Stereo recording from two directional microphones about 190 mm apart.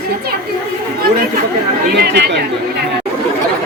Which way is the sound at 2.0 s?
60° right (ahead or behind).